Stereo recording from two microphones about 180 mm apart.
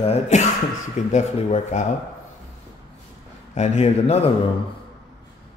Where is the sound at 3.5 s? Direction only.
35° left (ahead or behind).